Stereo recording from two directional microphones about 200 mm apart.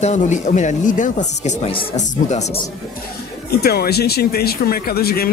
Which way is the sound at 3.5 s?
50° left (ahead or behind).